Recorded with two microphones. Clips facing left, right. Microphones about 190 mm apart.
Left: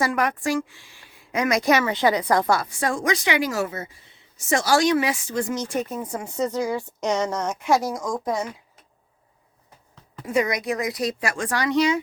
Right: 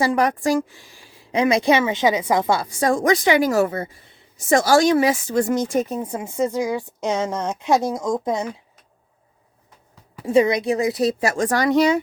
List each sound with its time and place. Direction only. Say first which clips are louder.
0.0 s a woman's voice: right 4 dB; 35° right (ahead or behind)
2.8 s speech: right 9 dB; 40° right (ahead or behind)
5.5 s speech: right 6 dB; 60° right (ahead or behind)
5.9 s speech: right 3 dB; 25° right (ahead or behind)
6.3 s a woman's voice: right 3 dB; 15° right (ahead or behind)
10.2 s a woman's voice: right 6 dB; 25° right (ahead or behind); by 11.9 s 45° right (ahead or behind)